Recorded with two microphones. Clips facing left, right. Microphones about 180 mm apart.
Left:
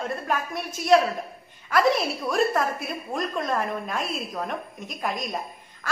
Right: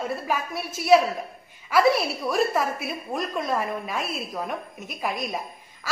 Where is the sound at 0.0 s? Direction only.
5° right (ahead or behind).